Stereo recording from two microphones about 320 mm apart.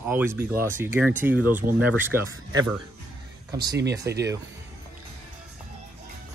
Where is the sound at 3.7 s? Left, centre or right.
Centre.